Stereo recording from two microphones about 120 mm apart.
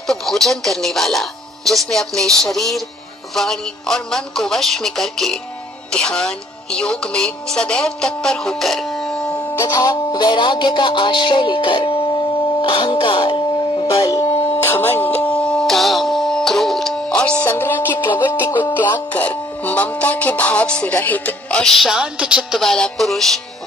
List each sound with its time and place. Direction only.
0.0 s speech: 5° left (ahead or behind)
9.6 s music: 30° left (ahead or behind)
12.6 s speech: 45° left (ahead or behind)
14.6 s music: 15° left (ahead or behind)